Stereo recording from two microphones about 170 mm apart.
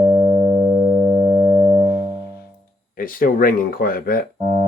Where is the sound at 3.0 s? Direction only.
60° left (ahead or behind).